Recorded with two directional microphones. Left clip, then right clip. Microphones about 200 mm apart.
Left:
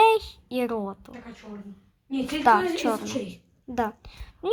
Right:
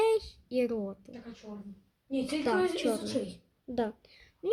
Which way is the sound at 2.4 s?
10° right (ahead or behind).